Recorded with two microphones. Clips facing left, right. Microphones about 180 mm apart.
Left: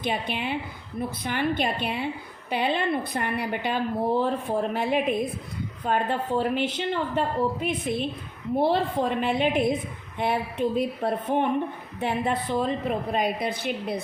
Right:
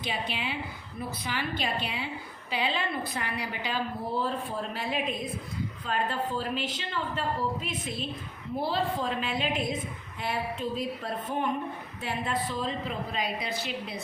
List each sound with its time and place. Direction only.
0.0 s a woman's voice: 55° left (ahead or behind)